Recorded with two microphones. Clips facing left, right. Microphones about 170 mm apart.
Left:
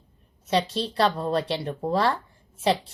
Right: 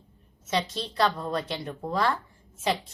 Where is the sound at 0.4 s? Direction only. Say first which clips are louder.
Left 5 dB; 30° left (ahead or behind).